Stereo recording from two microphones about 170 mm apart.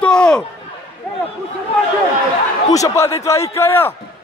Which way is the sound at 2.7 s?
20° left (ahead or behind).